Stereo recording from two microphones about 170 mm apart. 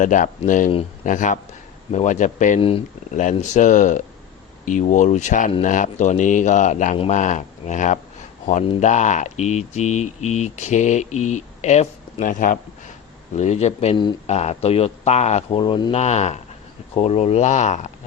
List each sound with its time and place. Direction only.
0.0 s speech: 50° left (ahead or behind)
2.6 s speech: 35° left (ahead or behind)
3.2 s speech: 45° left (ahead or behind)
13.3 s speech: 40° left (ahead or behind)